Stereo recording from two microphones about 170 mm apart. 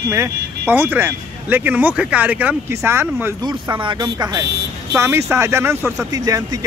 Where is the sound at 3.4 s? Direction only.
25° right (ahead or behind).